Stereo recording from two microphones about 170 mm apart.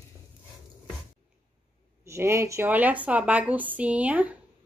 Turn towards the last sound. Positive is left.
turn(degrees=-10)  # may be behind; listen again after turning